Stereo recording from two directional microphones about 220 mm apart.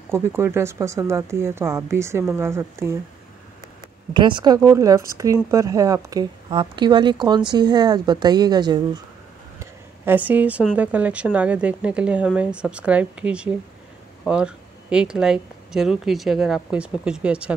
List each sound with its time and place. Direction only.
0.1 s speech: 10° right (ahead or behind)
4.1 s a woman's voice: 20° right (ahead or behind)
9.6 s a woman's voice: 10° right (ahead or behind)